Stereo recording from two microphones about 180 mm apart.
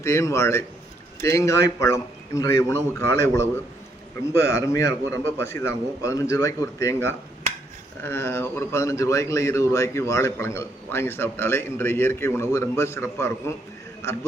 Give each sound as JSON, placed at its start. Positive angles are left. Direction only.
{"t": 0.0, "sound": "speech", "side_deg": 15}